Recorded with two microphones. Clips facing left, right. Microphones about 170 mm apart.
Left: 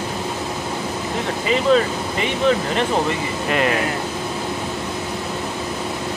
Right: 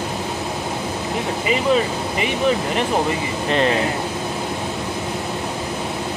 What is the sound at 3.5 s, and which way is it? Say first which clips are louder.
Speech: right 1 dB; 30° right (ahead or behind).